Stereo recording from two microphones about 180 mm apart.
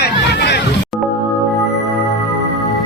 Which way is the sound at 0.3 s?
70° left (ahead or behind).